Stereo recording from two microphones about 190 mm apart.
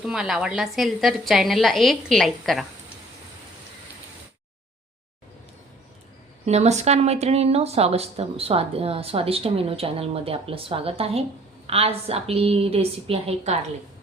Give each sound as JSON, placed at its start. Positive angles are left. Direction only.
{"t": 0.0, "sound": "a woman's voice", "side_deg": 0}
{"t": 6.4, "sound": "speech", "side_deg": -35}